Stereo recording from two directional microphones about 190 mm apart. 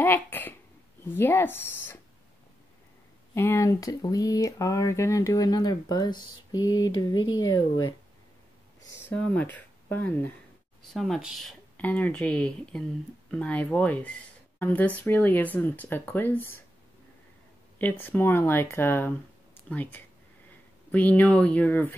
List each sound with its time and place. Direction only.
0.0 s a sound: 10° left (ahead or behind)
1.1 s speech: 10° left (ahead or behind)
3.3 s speech: 15° left (ahead or behind)
7.4 s speech: 90° left
8.9 s speech: 5° left (ahead or behind)
10.9 s speech: centre (ahead or behind)
17.7 s speech: 10° left (ahead or behind)